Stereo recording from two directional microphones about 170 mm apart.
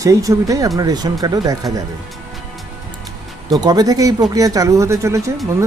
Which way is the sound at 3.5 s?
20° right (ahead or behind).